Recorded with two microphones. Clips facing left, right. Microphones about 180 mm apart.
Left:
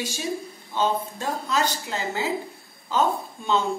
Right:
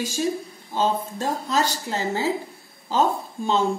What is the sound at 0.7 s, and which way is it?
A woman's voice, 40° right (ahead or behind).